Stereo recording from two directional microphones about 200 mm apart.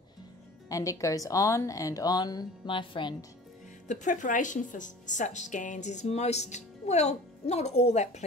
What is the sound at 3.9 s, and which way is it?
A woman's voice, 40° left (ahead or behind).